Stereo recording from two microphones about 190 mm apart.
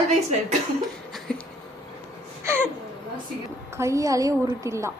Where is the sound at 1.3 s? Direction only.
5° left (ahead or behind).